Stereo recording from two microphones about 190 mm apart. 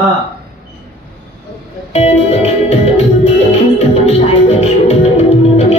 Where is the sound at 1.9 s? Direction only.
35° left (ahead or behind).